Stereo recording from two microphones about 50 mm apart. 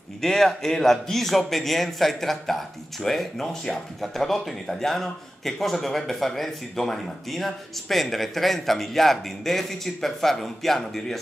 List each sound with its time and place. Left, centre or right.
0.2 s speech: centre